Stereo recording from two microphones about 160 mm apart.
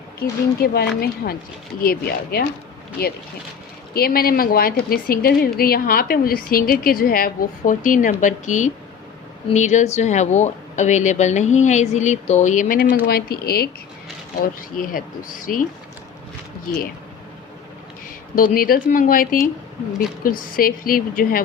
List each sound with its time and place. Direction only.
0.2 s a woman's voice: 80° left
3.9 s a woman's voice: 70° left (ahead or behind)
13.1 s a woman's voice: 75° left (ahead or behind)
15.5 s speech: 60° left (ahead or behind)
18.3 s speech: 60° left (ahead or behind)
19.9 s a woman's voice: centre (ahead or behind)
20.6 s speech: 65° left (ahead or behind)